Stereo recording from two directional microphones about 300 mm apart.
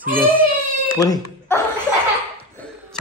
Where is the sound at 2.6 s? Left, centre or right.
Centre.